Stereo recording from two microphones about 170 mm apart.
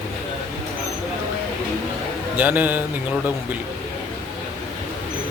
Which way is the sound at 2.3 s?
10° right (ahead or behind).